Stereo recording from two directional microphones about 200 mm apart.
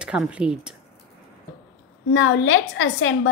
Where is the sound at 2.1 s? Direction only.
70° left (ahead or behind).